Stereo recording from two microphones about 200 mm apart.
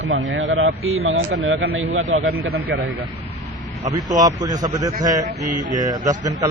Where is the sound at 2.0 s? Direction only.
75° right (ahead or behind); by 2.6 s 90° right.